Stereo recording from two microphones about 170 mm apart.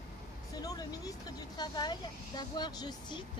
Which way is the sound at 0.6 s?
20° left (ahead or behind).